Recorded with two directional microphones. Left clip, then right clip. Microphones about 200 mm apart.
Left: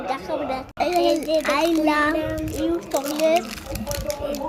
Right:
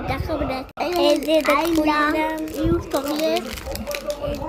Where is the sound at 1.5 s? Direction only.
5° left (ahead or behind).